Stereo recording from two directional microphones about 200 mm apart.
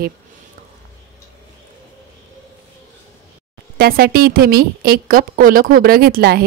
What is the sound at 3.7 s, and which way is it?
Speech, 50° right (ahead or behind).